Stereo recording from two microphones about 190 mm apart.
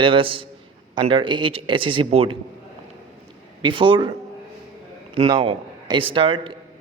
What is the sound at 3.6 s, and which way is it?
Speech, 25° right (ahead or behind).